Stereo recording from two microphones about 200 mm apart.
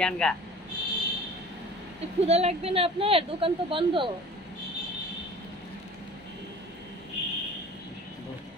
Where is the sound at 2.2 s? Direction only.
30° right (ahead or behind).